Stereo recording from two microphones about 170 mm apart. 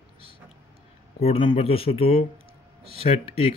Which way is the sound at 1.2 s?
35° left (ahead or behind).